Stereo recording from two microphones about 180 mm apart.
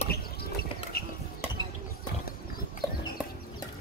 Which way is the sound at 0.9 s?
60° left (ahead or behind).